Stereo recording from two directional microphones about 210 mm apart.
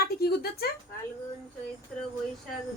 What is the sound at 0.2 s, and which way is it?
Speech, 45° left (ahead or behind).